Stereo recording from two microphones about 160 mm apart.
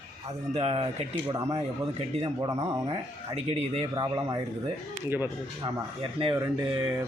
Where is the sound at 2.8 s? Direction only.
40° right (ahead or behind).